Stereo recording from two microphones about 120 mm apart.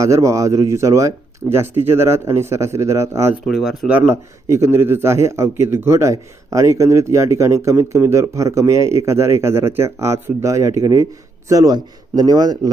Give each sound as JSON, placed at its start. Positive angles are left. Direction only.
{"t": 0.0, "sound": "a man's voice", "side_deg": -25}
{"t": 3.4, "sound": "speech", "side_deg": -5}
{"t": 4.4, "sound": "a man's voice", "side_deg": -25}